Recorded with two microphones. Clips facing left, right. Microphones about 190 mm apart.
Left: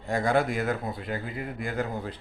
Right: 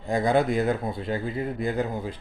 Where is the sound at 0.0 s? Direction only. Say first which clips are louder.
Right 3 dB; 20° right (ahead or behind).